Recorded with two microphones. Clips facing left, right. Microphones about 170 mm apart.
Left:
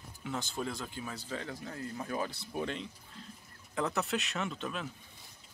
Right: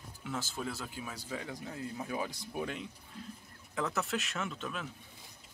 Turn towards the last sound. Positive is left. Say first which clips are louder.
# left 2 dB
turn(degrees=0)  # may be behind; listen again after turning